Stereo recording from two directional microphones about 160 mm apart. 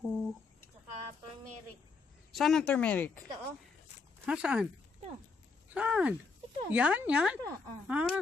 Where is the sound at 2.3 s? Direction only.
Centre (ahead or behind).